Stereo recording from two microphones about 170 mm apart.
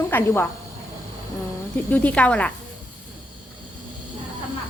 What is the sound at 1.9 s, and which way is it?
Speech, 10° left (ahead or behind).